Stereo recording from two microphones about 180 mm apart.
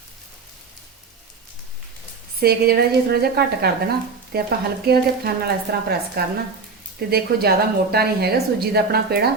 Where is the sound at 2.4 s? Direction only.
60° right (ahead or behind).